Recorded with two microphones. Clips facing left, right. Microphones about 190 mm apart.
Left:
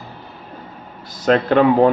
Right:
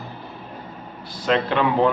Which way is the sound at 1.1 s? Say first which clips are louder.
Left 6 dB; 45° left (ahead or behind).